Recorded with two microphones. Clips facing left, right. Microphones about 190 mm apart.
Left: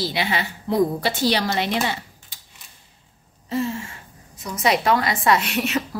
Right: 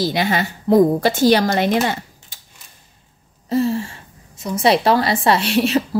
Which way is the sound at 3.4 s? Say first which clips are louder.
Right 6 dB; 35° right (ahead or behind).